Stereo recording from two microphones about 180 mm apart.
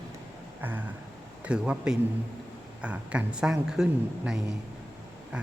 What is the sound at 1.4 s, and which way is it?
Speech, 5° right (ahead or behind).